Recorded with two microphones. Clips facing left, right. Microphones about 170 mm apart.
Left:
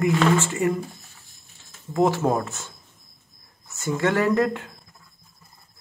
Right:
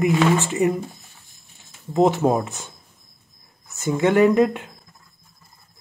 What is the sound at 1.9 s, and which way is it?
Speech, 20° right (ahead or behind).